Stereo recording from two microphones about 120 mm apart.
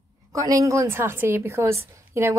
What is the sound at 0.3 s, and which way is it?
A woman's voice, 25° right (ahead or behind).